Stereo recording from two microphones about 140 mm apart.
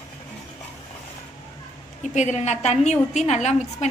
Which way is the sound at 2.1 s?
55° left (ahead or behind).